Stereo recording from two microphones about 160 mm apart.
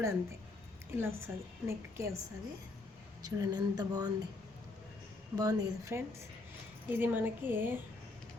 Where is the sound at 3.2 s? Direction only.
25° right (ahead or behind).